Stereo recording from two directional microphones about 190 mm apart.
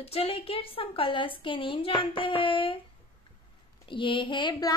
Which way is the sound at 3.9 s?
25° left (ahead or behind).